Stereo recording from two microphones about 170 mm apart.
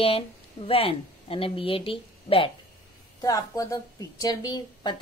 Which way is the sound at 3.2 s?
20° left (ahead or behind).